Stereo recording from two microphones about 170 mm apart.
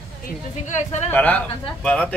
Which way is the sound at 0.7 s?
40° left (ahead or behind).